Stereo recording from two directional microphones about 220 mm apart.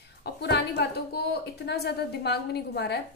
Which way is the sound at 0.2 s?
50° left (ahead or behind).